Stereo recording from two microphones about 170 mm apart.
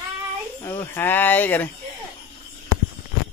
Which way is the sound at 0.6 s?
15° left (ahead or behind).